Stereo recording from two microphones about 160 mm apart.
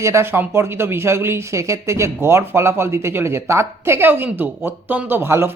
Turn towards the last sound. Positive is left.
turn(degrees=-15)  # may be behind; listen again after turning